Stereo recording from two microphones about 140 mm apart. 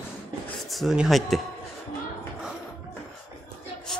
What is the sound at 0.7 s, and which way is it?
Speech, centre (ahead or behind).